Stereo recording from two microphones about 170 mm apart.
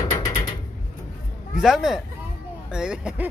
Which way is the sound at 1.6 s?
Centre (ahead or behind).